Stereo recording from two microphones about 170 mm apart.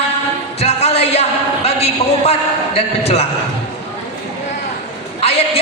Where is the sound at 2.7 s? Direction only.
35° left (ahead or behind).